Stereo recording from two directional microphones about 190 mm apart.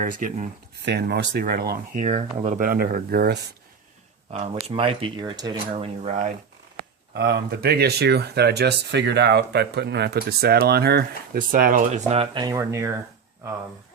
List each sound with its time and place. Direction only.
0.0 s speech: 45° right (ahead or behind)
0.8 s speech: 60° right (ahead or behind)
4.3 s speech: 35° right (ahead or behind)
6.7 s speech: 55° right (ahead or behind); by 12.9 s 15° right (ahead or behind)